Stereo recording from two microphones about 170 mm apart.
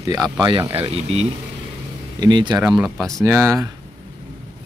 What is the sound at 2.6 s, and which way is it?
Speech, 5° right (ahead or behind).